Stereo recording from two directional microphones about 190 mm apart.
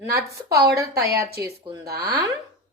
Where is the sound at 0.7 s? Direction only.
15° right (ahead or behind).